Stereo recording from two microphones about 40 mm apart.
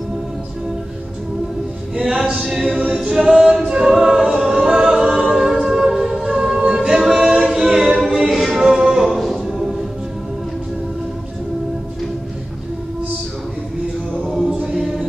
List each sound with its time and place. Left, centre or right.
2.0 s a capella: centre
2.5 s a capella: centre
5.6 s music: centre
6.6 s a capella: centre
8.6 s music: centre
9.0 s choir: centre
14.3 s choir: centre
14.8 s music: centre